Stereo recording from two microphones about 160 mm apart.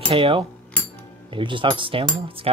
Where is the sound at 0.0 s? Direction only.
35° right (ahead or behind).